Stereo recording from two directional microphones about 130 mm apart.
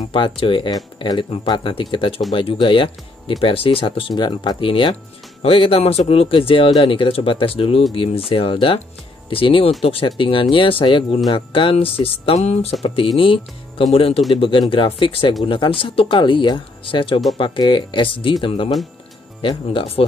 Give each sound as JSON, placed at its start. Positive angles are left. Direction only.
{"t": 0.1, "sound": "speech", "side_deg": 40}